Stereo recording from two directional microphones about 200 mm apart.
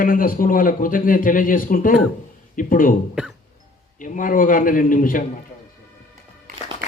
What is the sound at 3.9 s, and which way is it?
A man's voice, 40° left (ahead or behind).